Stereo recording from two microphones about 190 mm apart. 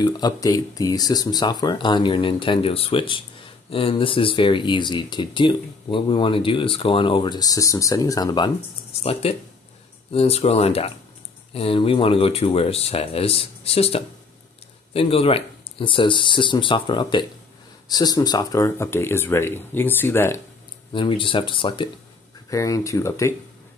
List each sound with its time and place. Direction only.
0.0 s speech: 20° left (ahead or behind)
9.0 s speech: 30° left (ahead or behind); by 20.3 s 10° left (ahead or behind)
20.9 s speech: 25° left (ahead or behind)